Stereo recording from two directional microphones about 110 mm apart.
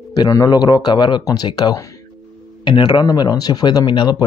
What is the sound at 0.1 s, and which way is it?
Speech, 35° left (ahead or behind).